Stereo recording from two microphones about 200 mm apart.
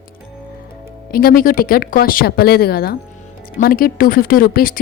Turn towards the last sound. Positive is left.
turn(degrees=45)  # may be behind; listen again after turning